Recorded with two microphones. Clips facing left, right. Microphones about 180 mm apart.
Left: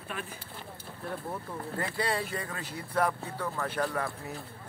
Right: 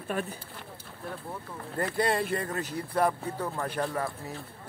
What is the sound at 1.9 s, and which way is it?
Speech, 50° right (ahead or behind).